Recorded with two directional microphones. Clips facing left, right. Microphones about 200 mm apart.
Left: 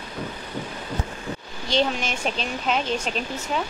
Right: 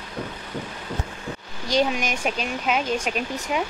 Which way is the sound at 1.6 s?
10° right (ahead or behind).